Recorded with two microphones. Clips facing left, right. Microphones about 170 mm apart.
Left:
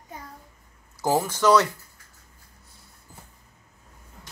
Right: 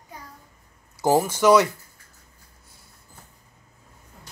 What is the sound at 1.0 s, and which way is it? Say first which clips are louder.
Speech: right 3 dB; 15° right (ahead or behind).